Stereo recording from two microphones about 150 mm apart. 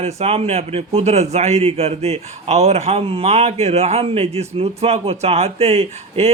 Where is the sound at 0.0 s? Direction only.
45° right (ahead or behind).